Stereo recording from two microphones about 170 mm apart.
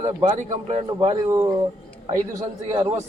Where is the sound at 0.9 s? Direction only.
25° right (ahead or behind).